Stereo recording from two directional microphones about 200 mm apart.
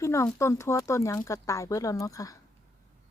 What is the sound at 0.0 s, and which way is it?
Speech, 15° left (ahead or behind).